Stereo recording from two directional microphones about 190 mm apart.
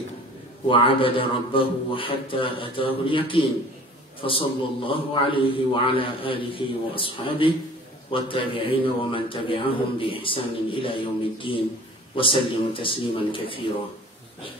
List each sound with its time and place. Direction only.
0.7 s a man's voice: 25° left (ahead or behind)